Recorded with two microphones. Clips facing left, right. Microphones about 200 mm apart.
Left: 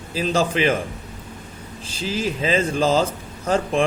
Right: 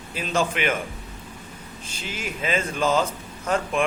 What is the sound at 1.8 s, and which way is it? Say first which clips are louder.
Speech: left 9 dB; 35° left (ahead or behind).